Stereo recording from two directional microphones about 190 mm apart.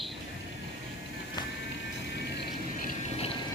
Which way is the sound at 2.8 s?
40° left (ahead or behind).